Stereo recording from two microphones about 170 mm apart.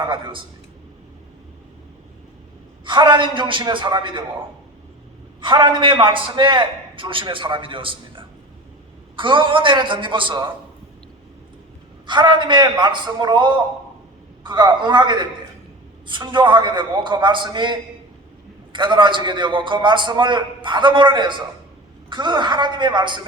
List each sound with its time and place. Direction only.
2.8 s a man's voice: 25° right (ahead or behind)
5.4 s a man's voice: 25° right (ahead or behind)
12.0 s a man's voice: 25° right (ahead or behind)